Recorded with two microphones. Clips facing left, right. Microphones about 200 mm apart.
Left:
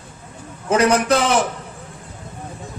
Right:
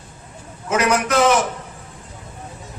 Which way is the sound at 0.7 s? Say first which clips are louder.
Left 3 dB; 35° left (ahead or behind).